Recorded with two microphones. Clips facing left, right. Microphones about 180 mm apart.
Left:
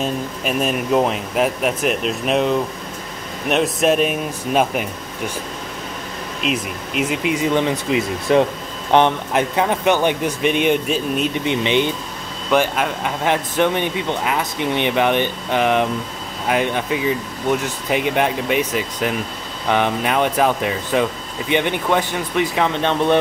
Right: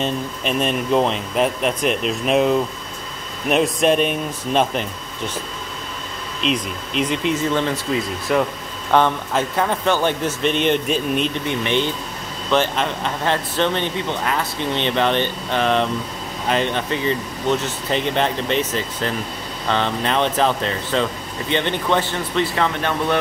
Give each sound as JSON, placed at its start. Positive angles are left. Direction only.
{"t": 0.0, "sound": "speech", "side_deg": 5}
{"t": 6.4, "sound": "speech", "side_deg": 5}
{"t": 11.4, "sound": "speech", "side_deg": 20}